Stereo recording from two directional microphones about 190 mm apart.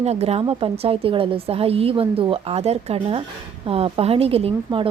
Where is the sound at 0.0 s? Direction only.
35° right (ahead or behind).